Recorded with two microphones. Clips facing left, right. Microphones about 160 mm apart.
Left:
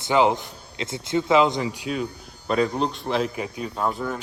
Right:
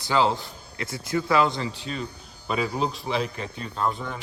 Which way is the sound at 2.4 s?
5° right (ahead or behind).